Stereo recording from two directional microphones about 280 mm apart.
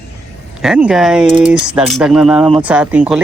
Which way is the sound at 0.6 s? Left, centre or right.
Centre.